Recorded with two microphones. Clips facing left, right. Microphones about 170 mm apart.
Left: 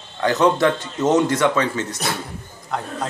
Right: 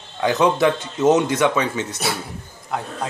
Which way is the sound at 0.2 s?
15° right (ahead or behind).